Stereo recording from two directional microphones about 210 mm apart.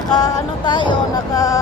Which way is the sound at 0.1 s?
20° left (ahead or behind).